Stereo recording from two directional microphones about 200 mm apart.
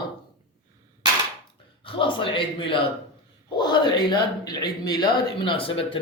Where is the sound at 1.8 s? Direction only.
25° left (ahead or behind).